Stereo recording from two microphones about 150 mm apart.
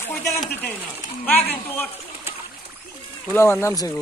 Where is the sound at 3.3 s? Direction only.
15° left (ahead or behind).